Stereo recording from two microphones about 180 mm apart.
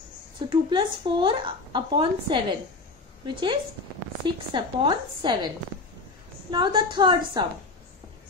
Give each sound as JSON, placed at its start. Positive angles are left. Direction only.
{"t": 0.5, "sound": "a woman's voice", "side_deg": -25}
{"t": 6.5, "sound": "a woman's voice", "side_deg": -25}